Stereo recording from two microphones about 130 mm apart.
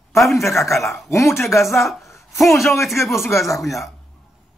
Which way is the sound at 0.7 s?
20° left (ahead or behind).